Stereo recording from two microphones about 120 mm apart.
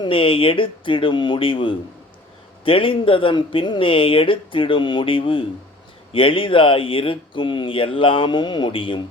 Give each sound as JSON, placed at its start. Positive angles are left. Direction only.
{"t": 0.0, "sound": "speech", "side_deg": 50}